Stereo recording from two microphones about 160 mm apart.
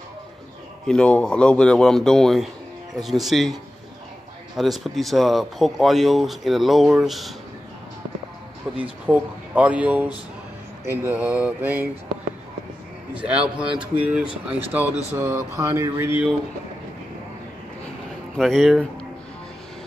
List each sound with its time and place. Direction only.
0.8 s speech: 5° left (ahead or behind)
4.6 s speech: centre (ahead or behind)
8.7 s speech: 10° right (ahead or behind)
13.1 s speech: 10° right (ahead or behind)
18.3 s speech: centre (ahead or behind)